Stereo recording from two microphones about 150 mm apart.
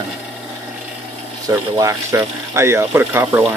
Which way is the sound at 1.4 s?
20° right (ahead or behind).